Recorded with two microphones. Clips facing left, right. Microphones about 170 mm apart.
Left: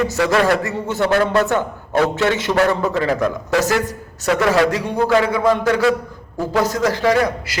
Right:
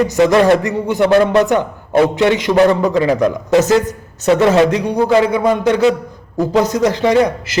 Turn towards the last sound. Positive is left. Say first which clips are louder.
# right 4 dB
turn(degrees=-20)  # may be behind; listen again after turning